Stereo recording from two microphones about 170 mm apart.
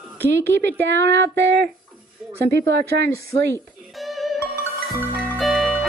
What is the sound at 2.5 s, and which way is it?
Speech, 80° right.